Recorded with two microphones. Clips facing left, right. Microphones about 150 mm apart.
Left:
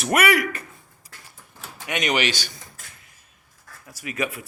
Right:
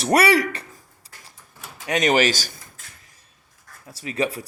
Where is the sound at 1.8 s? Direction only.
40° right (ahead or behind).